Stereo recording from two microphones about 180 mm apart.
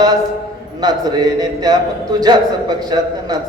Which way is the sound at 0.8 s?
20° right (ahead or behind).